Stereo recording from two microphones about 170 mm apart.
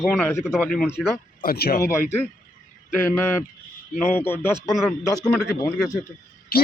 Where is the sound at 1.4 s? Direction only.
60° left (ahead or behind).